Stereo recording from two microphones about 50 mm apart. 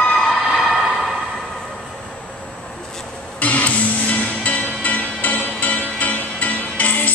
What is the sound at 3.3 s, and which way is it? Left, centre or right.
Music, left.